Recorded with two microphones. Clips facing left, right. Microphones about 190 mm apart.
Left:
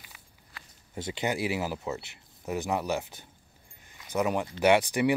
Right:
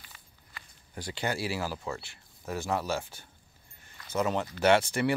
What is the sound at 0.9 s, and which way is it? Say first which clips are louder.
Speech: left 3 dB; 20° left (ahead or behind).